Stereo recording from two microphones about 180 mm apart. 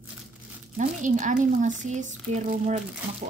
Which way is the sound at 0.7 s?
45° right (ahead or behind).